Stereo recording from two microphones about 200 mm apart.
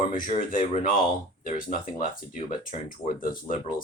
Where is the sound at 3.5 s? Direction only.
45° left (ahead or behind).